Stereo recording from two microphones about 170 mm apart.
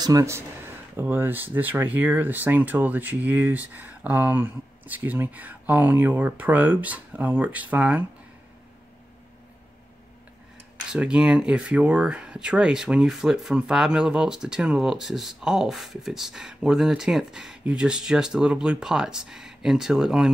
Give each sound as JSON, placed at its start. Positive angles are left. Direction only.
{"t": 0.0, "sound": "speech", "side_deg": -20}
{"t": 10.9, "sound": "speech", "side_deg": -5}